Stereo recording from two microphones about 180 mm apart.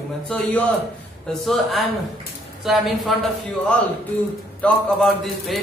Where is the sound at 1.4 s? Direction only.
Centre (ahead or behind).